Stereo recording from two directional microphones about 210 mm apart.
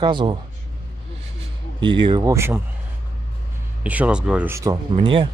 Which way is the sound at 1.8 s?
20° right (ahead or behind).